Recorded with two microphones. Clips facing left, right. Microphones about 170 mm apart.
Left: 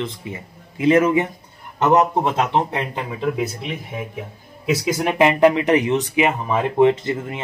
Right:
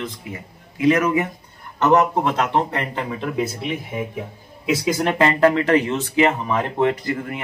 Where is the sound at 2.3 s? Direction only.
20° left (ahead or behind).